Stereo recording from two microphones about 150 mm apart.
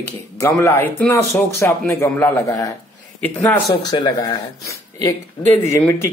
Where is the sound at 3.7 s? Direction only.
30° left (ahead or behind).